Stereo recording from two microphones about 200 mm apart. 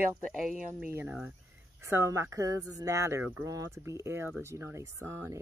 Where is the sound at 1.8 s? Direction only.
15° right (ahead or behind).